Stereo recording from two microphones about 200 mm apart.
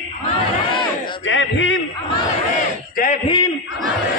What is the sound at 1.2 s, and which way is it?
Speech, 70° left (ahead or behind).